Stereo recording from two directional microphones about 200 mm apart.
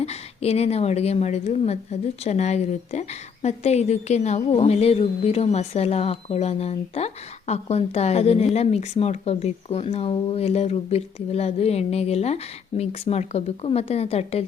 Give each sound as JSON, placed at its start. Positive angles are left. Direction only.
{"t": 0.0, "sound": "a woman's voice", "side_deg": 30}